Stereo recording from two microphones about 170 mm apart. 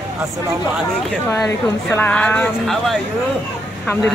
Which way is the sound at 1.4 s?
10° left (ahead or behind).